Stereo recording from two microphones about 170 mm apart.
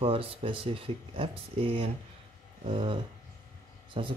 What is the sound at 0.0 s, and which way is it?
Speech, 35° right (ahead or behind).